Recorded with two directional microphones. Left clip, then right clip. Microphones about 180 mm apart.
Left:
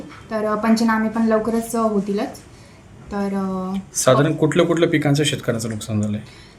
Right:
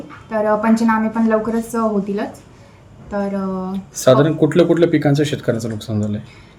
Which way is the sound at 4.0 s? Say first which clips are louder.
Right 3 dB; 40° right (ahead or behind).